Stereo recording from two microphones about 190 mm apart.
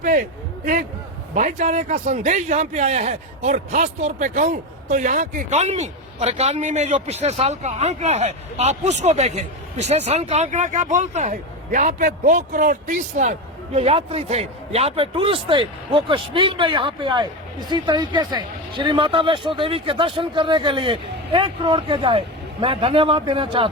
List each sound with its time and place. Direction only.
0.0 s a man's voice: 40° right (ahead or behind); by 23.7 s 25° right (ahead or behind)